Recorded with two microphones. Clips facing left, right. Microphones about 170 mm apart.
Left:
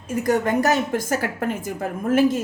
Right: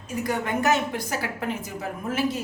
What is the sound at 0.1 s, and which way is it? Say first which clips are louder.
A woman's voice: left 6 dB; 45° left (ahead or behind).